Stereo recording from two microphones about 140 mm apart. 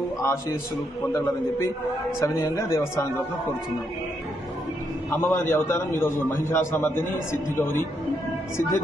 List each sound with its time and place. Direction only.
0.2 s a man's voice: 20° left (ahead or behind)
5.1 s a man's voice: 15° left (ahead or behind)